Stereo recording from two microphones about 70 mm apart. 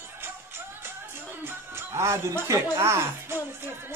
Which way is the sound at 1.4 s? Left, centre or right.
Right.